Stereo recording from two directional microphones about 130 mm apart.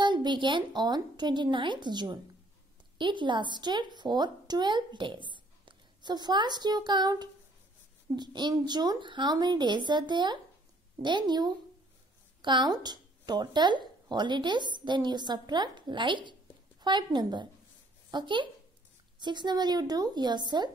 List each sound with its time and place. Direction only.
0.0 s a woman's voice: 35° right (ahead or behind)